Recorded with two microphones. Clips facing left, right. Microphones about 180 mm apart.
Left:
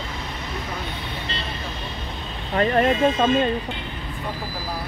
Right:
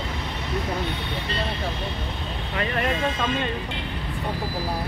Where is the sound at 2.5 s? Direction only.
40° left (ahead or behind).